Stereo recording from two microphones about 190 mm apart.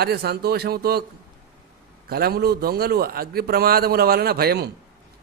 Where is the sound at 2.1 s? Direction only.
55° right (ahead or behind).